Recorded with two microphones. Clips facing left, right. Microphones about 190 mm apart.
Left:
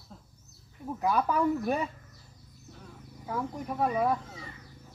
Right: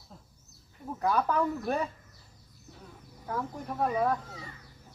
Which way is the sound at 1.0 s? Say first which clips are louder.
Left 1 dB; 10° left (ahead or behind).